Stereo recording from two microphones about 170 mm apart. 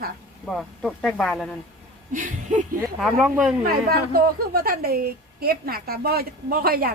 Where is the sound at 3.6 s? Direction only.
60° right (ahead or behind).